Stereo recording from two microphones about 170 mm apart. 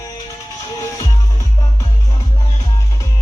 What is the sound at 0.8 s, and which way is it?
Music, 20° left (ahead or behind).